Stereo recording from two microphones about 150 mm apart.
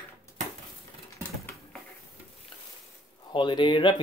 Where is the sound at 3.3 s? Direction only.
30° left (ahead or behind).